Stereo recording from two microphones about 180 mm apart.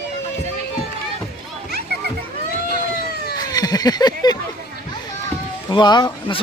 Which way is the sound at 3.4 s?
20° left (ahead or behind).